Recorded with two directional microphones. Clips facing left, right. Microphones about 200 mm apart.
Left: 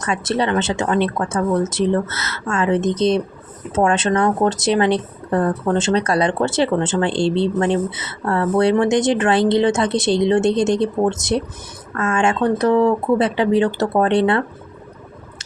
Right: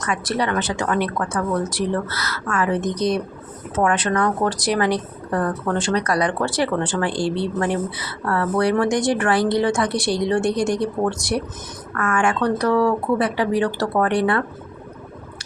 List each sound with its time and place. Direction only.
0.0 s speech: 25° left (ahead or behind)